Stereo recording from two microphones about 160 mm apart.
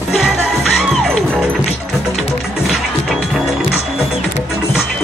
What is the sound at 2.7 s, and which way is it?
Music, centre (ahead or behind).